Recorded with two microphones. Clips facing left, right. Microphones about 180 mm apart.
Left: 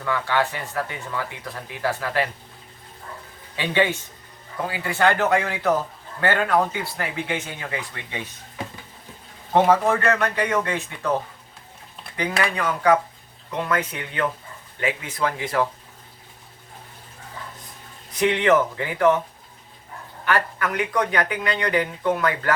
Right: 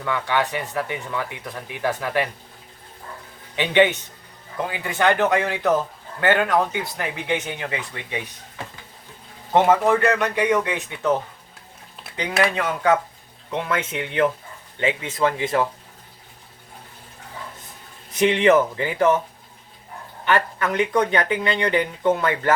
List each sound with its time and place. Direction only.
0.0 s speech: 20° right (ahead or behind)
3.5 s speech: 20° right (ahead or behind)
9.6 s speech: 15° right (ahead or behind)
12.4 s speech: 20° right (ahead or behind)
18.1 s speech: 25° right (ahead or behind)
20.2 s speech: 25° right (ahead or behind)